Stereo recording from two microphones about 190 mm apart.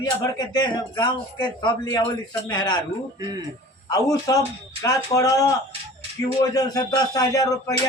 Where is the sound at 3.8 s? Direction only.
20° left (ahead or behind).